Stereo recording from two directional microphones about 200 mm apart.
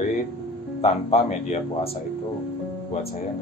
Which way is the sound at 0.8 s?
35° left (ahead or behind).